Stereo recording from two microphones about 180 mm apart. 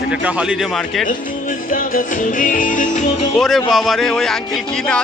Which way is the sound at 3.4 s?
Centre (ahead or behind).